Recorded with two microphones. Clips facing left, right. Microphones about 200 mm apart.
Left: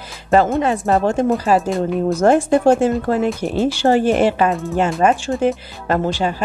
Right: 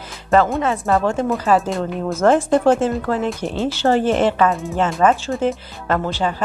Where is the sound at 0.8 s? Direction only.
40° left (ahead or behind).